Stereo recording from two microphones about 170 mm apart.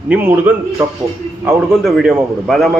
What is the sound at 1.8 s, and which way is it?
Speech, centre (ahead or behind).